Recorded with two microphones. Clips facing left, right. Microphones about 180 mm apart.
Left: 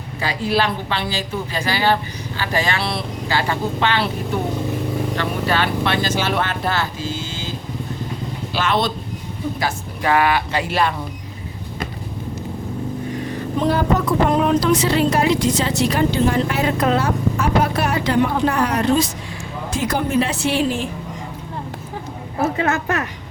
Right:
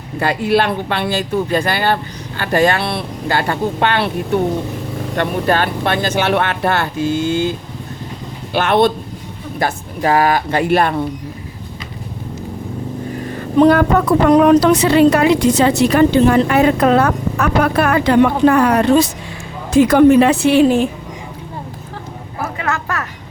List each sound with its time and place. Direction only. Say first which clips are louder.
0.2 s a woman's voice: right 5 dB; 55° right (ahead or behind)
5.1 s a woman's voice: right 8 dB; 50° right (ahead or behind)
8.5 s a woman's voice: right 7 dB; 55° right (ahead or behind)
10.0 s speech: right 3 dB; 40° right (ahead or behind)
13.6 s a woman's voice: right 8 dB; 65° right (ahead or behind)
22.4 s a sound: left 3 dB; 25° left (ahead or behind)